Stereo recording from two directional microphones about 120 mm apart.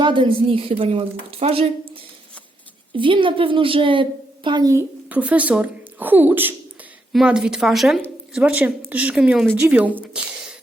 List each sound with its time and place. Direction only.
0.0 s a woman's voice: 40° right (ahead or behind)
2.9 s a woman's voice: 45° right (ahead or behind)
5.0 s speech: 15° right (ahead or behind)
7.1 s a woman's voice: 5° right (ahead or behind)